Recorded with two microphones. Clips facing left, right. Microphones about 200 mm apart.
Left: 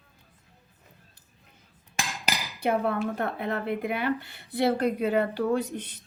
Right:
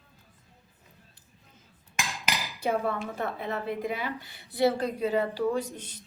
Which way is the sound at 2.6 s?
60° left (ahead or behind).